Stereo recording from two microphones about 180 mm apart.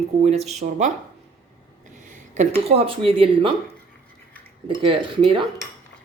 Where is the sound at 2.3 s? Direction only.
35° right (ahead or behind).